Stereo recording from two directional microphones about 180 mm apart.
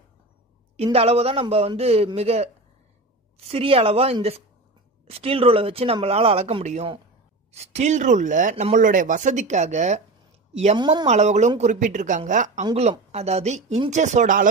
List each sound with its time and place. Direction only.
0.9 s a man's voice: 35° right (ahead or behind)
10.8 s speech: 25° right (ahead or behind)
11.1 s a man's voice: 40° right (ahead or behind)